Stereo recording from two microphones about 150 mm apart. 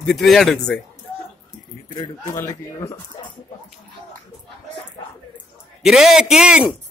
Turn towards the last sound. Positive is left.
turn(degrees=-5)  # may be behind; listen again after turning